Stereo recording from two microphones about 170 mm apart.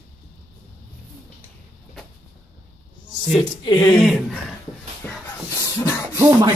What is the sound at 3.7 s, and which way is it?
Speech, 20° left (ahead or behind).